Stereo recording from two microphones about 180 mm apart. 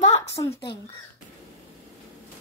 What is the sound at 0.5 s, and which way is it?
Speech, 65° left (ahead or behind).